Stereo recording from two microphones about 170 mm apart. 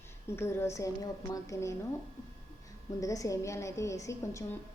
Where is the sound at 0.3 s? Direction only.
15° left (ahead or behind).